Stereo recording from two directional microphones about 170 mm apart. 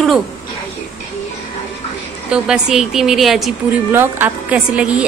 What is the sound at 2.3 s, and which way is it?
A woman's voice, 5° right (ahead or behind).